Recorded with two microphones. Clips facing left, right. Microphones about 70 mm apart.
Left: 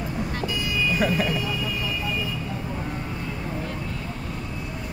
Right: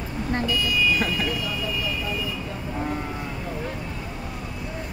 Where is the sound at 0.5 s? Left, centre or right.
Left.